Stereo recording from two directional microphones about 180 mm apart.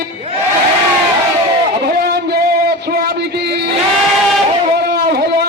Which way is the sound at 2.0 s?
60° right (ahead or behind).